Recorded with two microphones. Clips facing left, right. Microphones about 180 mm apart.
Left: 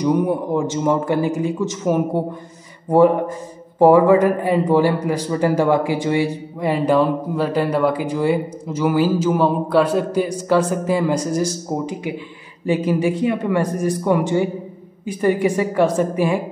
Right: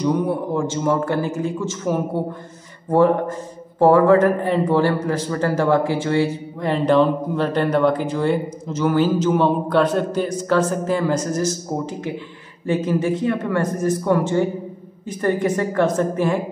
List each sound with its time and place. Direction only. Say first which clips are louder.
0.0 s a man's voice: left 2 dB; 15° left (ahead or behind)